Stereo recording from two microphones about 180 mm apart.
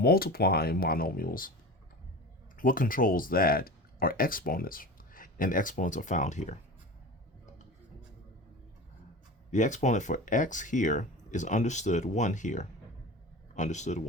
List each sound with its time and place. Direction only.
0.0 s speech: 55° left (ahead or behind)
2.6 s speech: 50° left (ahead or behind)
9.5 s speech: 40° left (ahead or behind)